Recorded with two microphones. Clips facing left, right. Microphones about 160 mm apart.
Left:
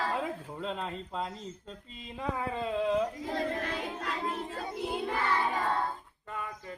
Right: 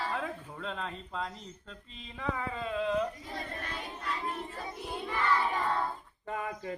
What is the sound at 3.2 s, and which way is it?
Child singing, 90° left.